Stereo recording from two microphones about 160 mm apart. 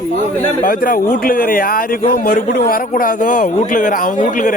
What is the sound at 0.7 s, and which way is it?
Speech, 65° left (ahead or behind).